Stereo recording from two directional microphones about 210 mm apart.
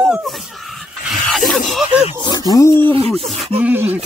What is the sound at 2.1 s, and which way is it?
Snake, 20° left (ahead or behind).